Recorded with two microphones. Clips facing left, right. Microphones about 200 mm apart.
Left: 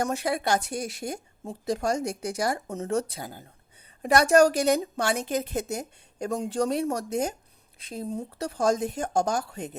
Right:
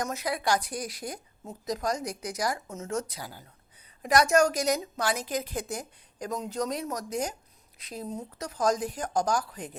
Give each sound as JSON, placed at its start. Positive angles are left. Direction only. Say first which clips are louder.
{"t": 0.0, "sound": "a woman's voice", "louder": "left 4 dB", "side_deg": 30}